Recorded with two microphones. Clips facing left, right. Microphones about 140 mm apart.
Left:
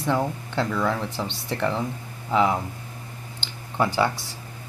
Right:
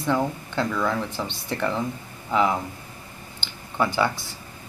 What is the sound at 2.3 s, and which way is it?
Speech, 20° left (ahead or behind).